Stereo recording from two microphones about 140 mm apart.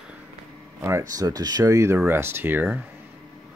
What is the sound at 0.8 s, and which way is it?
Speech, 20° right (ahead or behind).